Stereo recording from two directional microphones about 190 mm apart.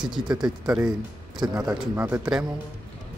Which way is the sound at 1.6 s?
Centre (ahead or behind).